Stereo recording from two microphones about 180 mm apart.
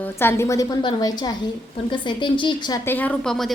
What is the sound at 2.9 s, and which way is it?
Speech, 10° left (ahead or behind).